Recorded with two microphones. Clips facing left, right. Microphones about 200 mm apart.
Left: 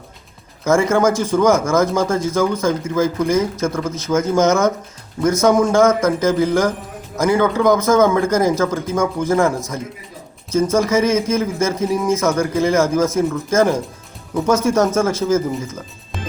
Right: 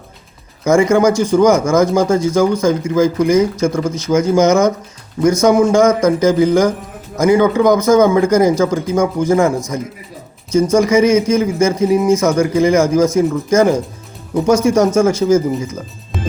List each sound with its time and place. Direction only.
0.6 s speech: 15° right (ahead or behind)
16.1 s music: centre (ahead or behind)